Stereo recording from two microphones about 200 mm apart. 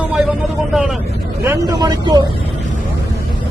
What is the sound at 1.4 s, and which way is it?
Speech, 20° right (ahead or behind).